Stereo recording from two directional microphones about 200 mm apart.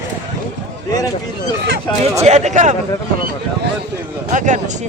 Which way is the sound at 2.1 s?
35° right (ahead or behind).